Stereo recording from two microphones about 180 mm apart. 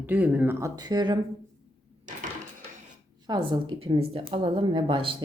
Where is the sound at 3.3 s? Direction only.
30° right (ahead or behind).